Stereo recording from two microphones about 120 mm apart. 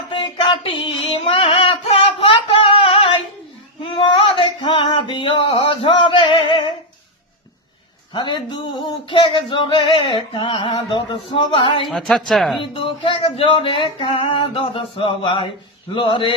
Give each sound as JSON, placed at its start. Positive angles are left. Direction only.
{"t": 0.1, "sound": "female singing", "side_deg": 45}
{"t": 8.1, "sound": "a man's voice", "side_deg": 40}
{"t": 9.0, "sound": "a sound", "side_deg": 45}
{"t": 11.9, "sound": "speech", "side_deg": 5}
{"t": 12.7, "sound": "speech", "side_deg": 45}
{"t": 13.5, "sound": "a sound", "side_deg": 45}